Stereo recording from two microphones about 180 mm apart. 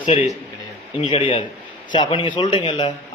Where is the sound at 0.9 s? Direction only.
30° left (ahead or behind).